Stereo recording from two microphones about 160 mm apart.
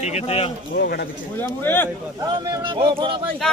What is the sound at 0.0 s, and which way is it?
Speech, 40° left (ahead or behind).